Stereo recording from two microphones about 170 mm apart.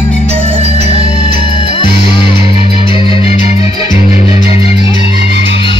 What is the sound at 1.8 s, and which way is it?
Music, 30° left (ahead or behind).